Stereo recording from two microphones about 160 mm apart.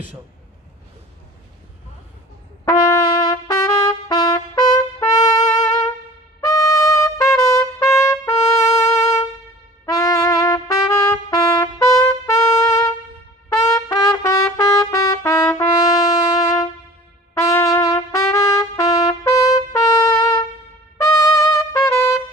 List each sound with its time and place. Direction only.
2.6 s trumpet: 25° left (ahead or behind)
6.4 s trumpet: 20° left (ahead or behind)